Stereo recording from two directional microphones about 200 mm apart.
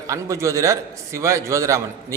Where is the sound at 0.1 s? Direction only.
15° right (ahead or behind).